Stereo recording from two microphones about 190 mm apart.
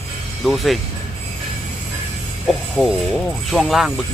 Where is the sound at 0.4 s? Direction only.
Centre (ahead or behind).